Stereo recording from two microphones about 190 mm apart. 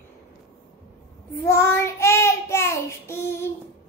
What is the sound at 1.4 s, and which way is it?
Child singing, 15° left (ahead or behind).